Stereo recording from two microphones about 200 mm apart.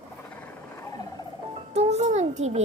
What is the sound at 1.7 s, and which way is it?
Speech, 35° right (ahead or behind).